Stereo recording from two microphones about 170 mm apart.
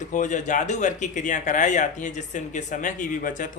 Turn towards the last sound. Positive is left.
turn(degrees=50)  # may be behind; listen again after turning